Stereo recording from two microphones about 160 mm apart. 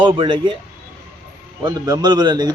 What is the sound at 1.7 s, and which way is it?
Speech, 25° right (ahead or behind).